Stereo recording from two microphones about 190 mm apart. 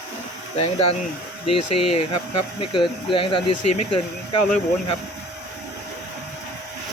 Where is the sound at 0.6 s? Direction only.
30° left (ahead or behind).